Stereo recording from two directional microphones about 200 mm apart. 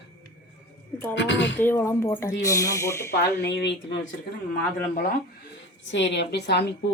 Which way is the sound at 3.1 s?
60° left (ahead or behind).